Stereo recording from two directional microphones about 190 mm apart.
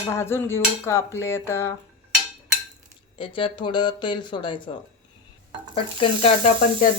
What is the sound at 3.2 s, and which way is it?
Speech, 25° left (ahead or behind).